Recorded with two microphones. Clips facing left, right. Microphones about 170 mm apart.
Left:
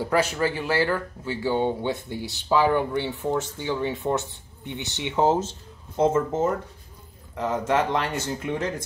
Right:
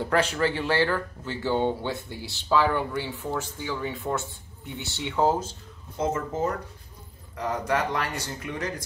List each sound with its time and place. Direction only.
0.0 s speech: 10° left (ahead or behind); by 8.8 s 25° left (ahead or behind)